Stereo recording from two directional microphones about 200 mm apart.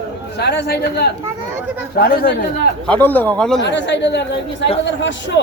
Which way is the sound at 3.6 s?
60° left (ahead or behind).